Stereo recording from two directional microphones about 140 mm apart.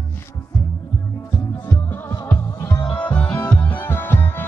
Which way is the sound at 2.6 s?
15° left (ahead or behind).